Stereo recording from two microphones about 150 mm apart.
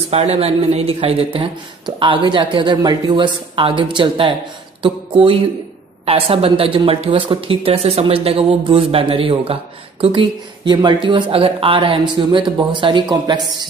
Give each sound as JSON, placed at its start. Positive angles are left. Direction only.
{"t": 0.1, "sound": "speech", "side_deg": -40}